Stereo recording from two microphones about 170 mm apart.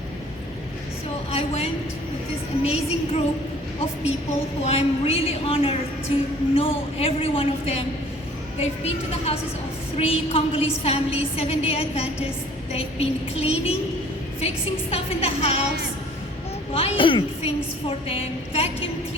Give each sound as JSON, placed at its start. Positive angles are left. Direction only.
{"t": 1.3, "sound": "a woman's voice", "side_deg": 35}
{"t": 4.6, "sound": "a woman's voice", "side_deg": 35}
{"t": 16.7, "sound": "a woman's voice", "side_deg": 35}